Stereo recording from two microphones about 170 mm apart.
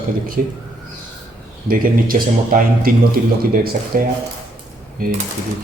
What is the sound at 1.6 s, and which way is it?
Speech, 55° right (ahead or behind).